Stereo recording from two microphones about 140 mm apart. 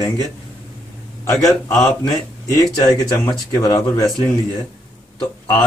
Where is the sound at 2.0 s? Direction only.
25° left (ahead or behind).